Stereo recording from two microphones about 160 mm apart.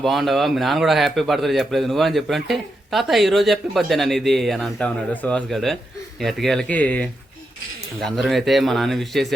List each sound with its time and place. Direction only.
0.0 s a man's voice: centre (ahead or behind)